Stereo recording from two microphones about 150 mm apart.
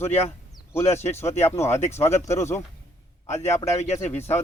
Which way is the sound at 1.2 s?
45° left (ahead or behind).